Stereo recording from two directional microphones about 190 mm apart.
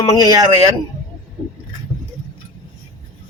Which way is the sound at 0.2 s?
20° right (ahead or behind).